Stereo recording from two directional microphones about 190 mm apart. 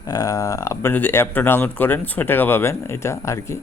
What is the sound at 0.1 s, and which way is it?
Speech, 20° left (ahead or behind).